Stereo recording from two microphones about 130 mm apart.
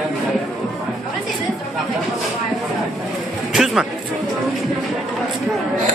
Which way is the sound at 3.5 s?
5° right (ahead or behind).